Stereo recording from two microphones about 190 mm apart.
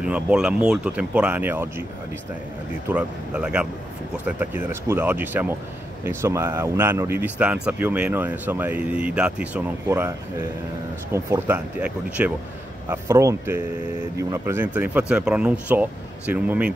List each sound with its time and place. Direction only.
0.0 s speech: 5° right (ahead or behind)
2.9 s speech: 5° right (ahead or behind)